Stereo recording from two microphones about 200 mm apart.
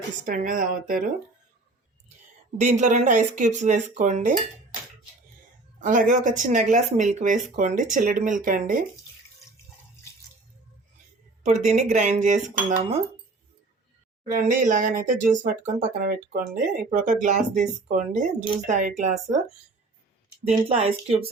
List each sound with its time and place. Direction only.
0.3 s speech: 40° right (ahead or behind)
2.6 s speech: 35° right (ahead or behind)
5.8 s speech: 40° right (ahead or behind)
11.6 s speech: 35° right (ahead or behind)
14.3 s speech: 40° right (ahead or behind)
20.5 s speech: 30° right (ahead or behind)